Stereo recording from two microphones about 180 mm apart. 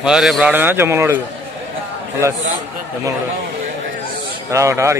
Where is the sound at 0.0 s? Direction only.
Centre (ahead or behind).